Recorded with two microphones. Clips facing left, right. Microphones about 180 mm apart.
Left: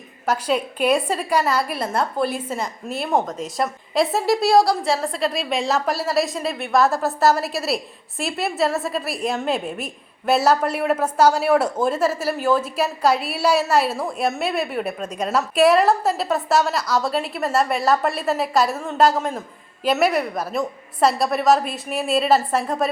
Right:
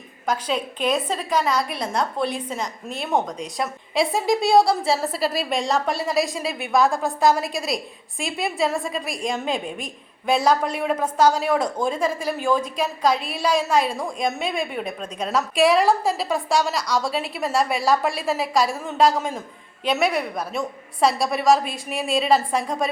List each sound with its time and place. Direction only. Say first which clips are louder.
0.3 s a woman's voice: left 3 dB; 10° left (ahead or behind)